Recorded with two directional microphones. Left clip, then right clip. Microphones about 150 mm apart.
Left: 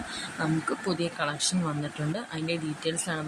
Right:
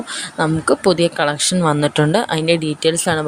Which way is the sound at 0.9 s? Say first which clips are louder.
Right 16 dB; 65° right (ahead or behind).